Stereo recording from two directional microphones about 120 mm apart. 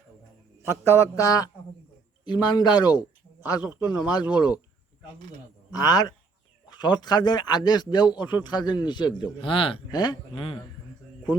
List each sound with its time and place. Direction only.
0.6 s mantra: 25° left (ahead or behind)
2.2 s speech: 35° left (ahead or behind)
5.7 s speech: 35° left (ahead or behind); by 9.8 s 50° left (ahead or behind)
9.9 s speech: 35° left (ahead or behind)